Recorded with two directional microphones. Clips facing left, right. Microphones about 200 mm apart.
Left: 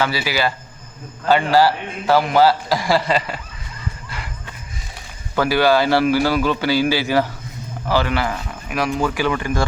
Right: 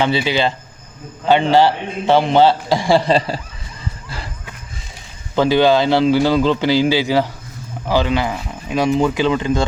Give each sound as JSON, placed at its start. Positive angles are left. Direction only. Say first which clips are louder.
{"t": 0.0, "sound": "a man's voice", "louder": "right 4 dB", "side_deg": -25}
{"t": 5.3, "sound": "a man's voice", "louder": "right 3 dB", "side_deg": -20}